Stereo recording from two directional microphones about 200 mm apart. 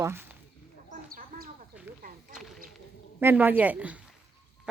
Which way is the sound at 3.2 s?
10° right (ahead or behind).